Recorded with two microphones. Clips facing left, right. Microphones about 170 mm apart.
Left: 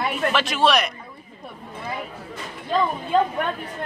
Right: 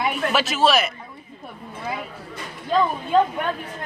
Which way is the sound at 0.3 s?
5° right (ahead or behind).